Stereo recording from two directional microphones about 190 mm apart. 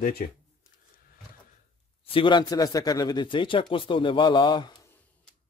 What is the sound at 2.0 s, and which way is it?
A man's voice, 25° left (ahead or behind).